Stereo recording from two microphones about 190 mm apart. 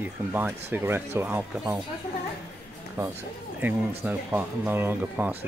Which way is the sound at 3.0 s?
15° right (ahead or behind).